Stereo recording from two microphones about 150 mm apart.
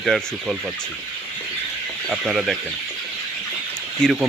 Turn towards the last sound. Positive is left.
turn(degrees=0)  # may be behind; listen again after turning